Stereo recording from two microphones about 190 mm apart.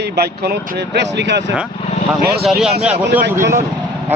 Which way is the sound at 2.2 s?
55° right (ahead or behind).